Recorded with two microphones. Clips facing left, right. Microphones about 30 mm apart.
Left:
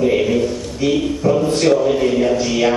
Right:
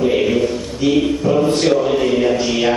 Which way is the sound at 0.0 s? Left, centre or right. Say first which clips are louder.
Even; centre.